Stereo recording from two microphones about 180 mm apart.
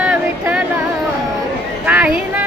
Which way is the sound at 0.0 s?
5° right (ahead or behind).